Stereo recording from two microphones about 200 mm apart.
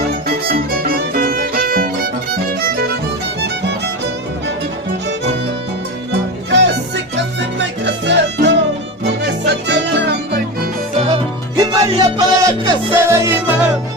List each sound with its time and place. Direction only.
0.3 s music: 50° right (ahead or behind)
6.5 s music: 65° right (ahead or behind)
10.9 s music: 30° right (ahead or behind); by 13.6 s 10° right (ahead or behind)